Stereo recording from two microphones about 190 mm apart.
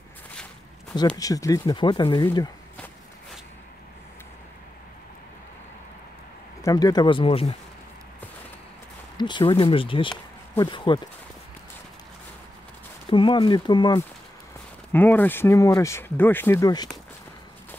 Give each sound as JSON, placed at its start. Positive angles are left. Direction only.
{"t": 1.1, "sound": "speech", "side_deg": 20}
{"t": 6.6, "sound": "speech", "side_deg": 20}
{"t": 9.1, "sound": "speech", "side_deg": 25}
{"t": 13.1, "sound": "speech", "side_deg": 25}
{"t": 14.9, "sound": "speech", "side_deg": 10}